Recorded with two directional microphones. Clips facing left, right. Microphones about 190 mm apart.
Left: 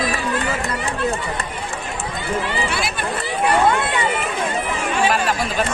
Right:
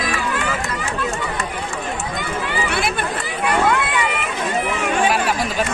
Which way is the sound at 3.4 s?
30° left (ahead or behind).